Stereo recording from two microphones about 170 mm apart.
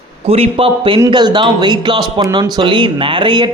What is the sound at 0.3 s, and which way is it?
Speech, 35° right (ahead or behind).